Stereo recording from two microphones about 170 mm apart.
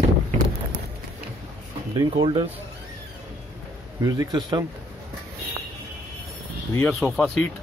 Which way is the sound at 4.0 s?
20° right (ahead or behind).